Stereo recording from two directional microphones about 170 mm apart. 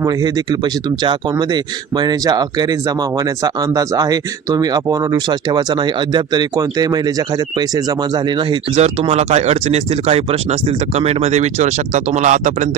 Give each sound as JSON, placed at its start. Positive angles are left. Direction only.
{"t": 1.0, "sound": "speech", "side_deg": -25}
{"t": 3.4, "sound": "speech", "side_deg": -20}
{"t": 8.7, "sound": "speech", "side_deg": -40}